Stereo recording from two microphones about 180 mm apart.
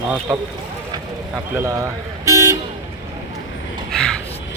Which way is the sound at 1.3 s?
15° right (ahead or behind).